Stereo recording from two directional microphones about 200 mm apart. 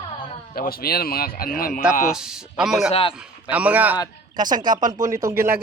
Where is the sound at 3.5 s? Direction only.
5° right (ahead or behind).